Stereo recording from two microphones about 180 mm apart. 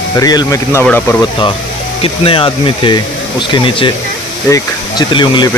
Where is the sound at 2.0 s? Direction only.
30° left (ahead or behind).